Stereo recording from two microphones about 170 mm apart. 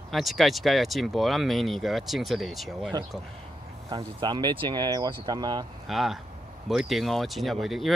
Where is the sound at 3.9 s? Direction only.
25° right (ahead or behind).